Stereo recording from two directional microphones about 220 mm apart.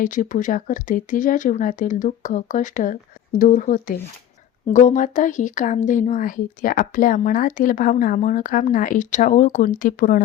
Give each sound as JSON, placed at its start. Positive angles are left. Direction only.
{"t": 0.0, "sound": "speech", "side_deg": 35}